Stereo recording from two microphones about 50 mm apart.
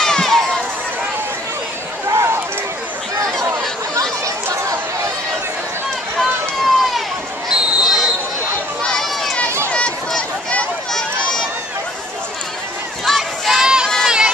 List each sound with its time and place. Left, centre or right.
0.0 s crowd: centre
2.0 s a sound: right
6.1 s vehicle: centre
7.4 s basketball bounce: centre
8.8 s run: centre
9.7 s a sound: left
10.9 s run: centre
13.0 s crowd: centre
13.8 s run: centre